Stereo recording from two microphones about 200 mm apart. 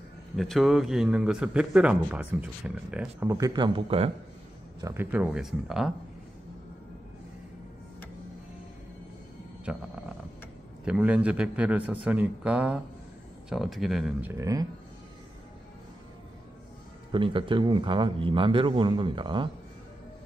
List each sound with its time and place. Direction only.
0.4 s a man's voice: centre (ahead or behind); by 4.1 s 25° right (ahead or behind)
4.8 s a man's voice: 10° right (ahead or behind)
9.7 s speech: 5° right (ahead or behind)
10.9 s a man's voice: 5° right (ahead or behind)
14.3 s speech: 15° right (ahead or behind)
17.1 s a man's voice: 25° right (ahead or behind)